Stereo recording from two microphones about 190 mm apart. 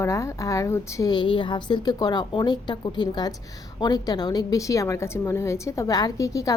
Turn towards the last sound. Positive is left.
turn(degrees=15)  # may be behind; listen again after turning